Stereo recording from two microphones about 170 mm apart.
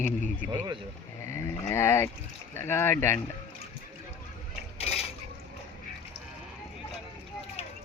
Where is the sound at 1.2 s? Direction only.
15° left (ahead or behind).